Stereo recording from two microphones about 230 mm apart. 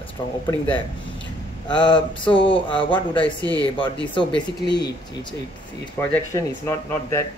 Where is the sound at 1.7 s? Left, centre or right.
Centre.